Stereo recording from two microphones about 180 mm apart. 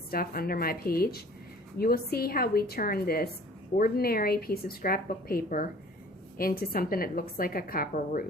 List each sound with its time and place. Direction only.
0.1 s a woman's voice: 55° left (ahead or behind)